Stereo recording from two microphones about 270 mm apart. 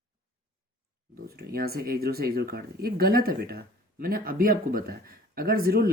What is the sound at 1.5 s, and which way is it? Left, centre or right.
Speech, right.